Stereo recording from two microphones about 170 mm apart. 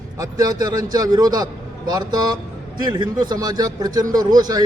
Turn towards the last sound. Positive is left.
turn(degrees=-25)  # may be behind; listen again after turning